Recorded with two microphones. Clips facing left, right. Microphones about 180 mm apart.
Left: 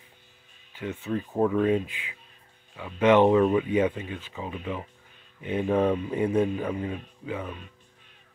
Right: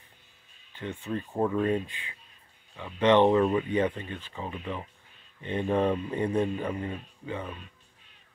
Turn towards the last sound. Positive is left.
turn(degrees=5)  # may be behind; listen again after turning